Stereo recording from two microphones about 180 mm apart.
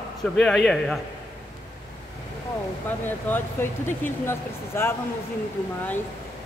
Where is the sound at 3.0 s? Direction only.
10° left (ahead or behind).